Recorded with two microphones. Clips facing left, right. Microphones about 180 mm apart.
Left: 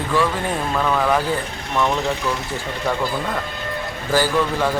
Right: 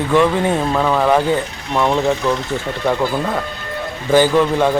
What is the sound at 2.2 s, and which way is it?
Speech, 25° right (ahead or behind).